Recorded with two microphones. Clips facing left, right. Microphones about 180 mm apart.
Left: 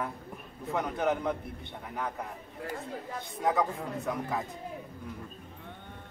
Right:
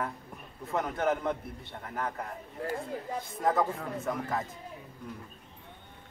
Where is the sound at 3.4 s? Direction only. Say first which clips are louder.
Even; centre (ahead or behind).